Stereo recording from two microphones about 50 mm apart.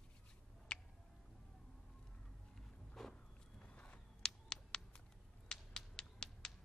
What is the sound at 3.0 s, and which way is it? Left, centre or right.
Walk, centre.